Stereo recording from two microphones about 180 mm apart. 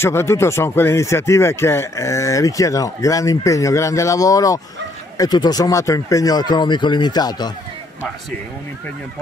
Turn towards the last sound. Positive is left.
turn(degrees=20)  # may be behind; listen again after turning